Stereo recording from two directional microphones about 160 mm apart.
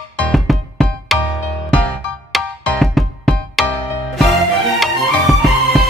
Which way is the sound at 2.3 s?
Centre (ahead or behind).